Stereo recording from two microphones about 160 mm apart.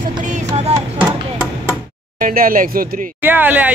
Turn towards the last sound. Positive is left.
turn(degrees=-10)  # may be behind; listen again after turning